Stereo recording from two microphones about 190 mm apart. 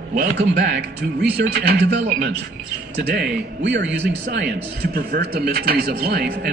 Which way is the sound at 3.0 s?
55° right (ahead or behind).